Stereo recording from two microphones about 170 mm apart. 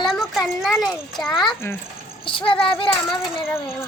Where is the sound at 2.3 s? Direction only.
30° left (ahead or behind).